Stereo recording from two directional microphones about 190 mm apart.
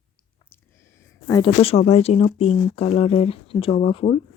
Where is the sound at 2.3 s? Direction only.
30° left (ahead or behind).